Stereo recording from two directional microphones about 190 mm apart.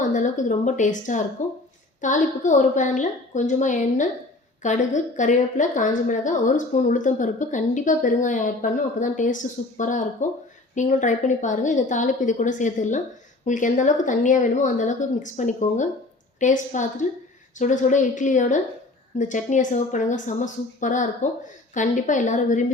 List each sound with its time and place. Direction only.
0.0 s a woman's voice: 40° left (ahead or behind)